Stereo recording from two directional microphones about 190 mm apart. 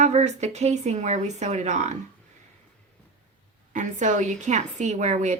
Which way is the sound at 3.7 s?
40° right (ahead or behind).